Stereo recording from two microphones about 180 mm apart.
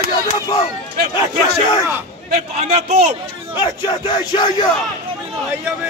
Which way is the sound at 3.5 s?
25° left (ahead or behind).